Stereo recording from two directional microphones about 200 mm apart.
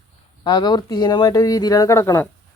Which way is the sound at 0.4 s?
20° left (ahead or behind).